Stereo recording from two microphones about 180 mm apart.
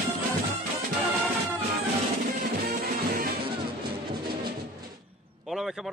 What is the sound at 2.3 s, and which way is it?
Music, 60° right (ahead or behind).